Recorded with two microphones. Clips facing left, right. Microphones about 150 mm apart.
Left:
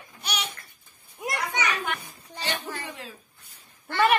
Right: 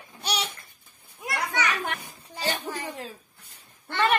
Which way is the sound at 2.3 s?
40° right (ahead or behind).